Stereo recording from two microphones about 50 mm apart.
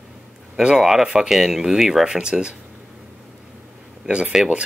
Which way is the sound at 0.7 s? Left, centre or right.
Centre.